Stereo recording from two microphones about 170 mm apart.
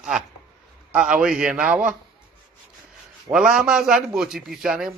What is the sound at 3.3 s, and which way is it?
A man's voice, 5° right (ahead or behind).